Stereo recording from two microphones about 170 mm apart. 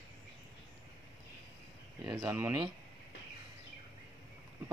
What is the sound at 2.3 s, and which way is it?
Speech, 15° right (ahead or behind).